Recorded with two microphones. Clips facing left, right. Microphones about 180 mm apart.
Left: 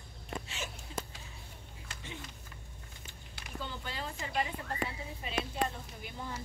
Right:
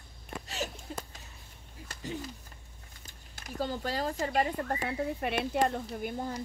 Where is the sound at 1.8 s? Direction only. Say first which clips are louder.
Right 9 dB; 40° right (ahead or behind).